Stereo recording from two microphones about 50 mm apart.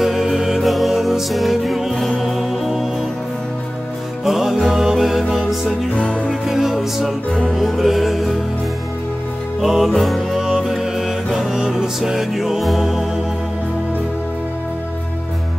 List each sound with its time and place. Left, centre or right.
0.0 s music: centre
4.2 s music: centre
5.9 s music: left
6.2 s music: centre
7.2 s music: left
7.5 s music: centre
9.6 s music: centre
9.9 s music: centre